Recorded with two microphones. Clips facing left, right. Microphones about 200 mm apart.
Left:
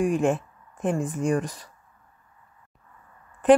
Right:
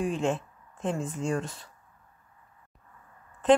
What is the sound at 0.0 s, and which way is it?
Speech, 15° left (ahead or behind).